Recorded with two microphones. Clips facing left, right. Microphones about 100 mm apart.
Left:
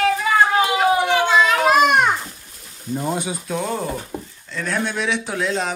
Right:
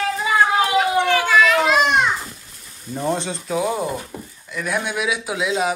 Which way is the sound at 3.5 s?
5° right (ahead or behind).